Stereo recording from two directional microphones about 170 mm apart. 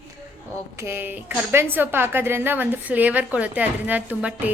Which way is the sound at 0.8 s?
15° right (ahead or behind).